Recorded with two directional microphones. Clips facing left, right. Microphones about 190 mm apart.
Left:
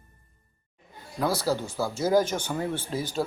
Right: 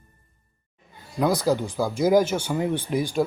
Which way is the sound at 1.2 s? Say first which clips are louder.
Right 5 dB; 15° right (ahead or behind).